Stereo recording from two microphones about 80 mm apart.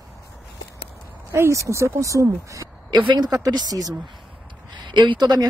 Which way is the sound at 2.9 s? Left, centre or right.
Right.